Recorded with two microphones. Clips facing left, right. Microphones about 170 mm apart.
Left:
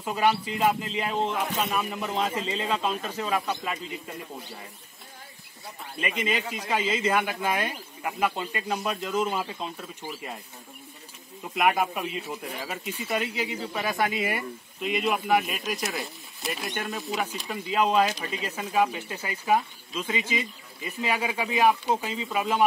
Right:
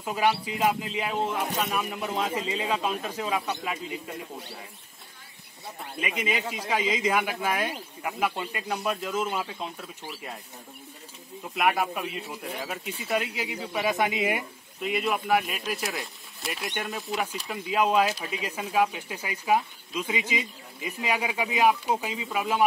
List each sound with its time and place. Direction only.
0.0 s speech: 5° right (ahead or behind)
5.9 s speech: 10° right (ahead or behind)
11.5 s speech: centre (ahead or behind)
13.8 s speech: 20° right (ahead or behind)
14.8 s speech: centre (ahead or behind)